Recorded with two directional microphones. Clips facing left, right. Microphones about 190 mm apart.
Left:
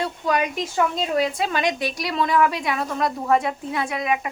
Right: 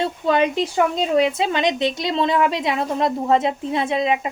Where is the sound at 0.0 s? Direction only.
25° right (ahead or behind).